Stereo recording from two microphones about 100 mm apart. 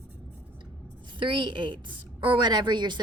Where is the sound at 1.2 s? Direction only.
50° right (ahead or behind).